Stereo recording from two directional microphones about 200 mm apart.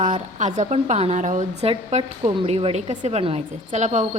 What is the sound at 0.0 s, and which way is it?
A woman's voice, 35° right (ahead or behind).